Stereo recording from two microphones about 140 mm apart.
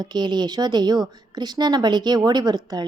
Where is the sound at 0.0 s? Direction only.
30° right (ahead or behind).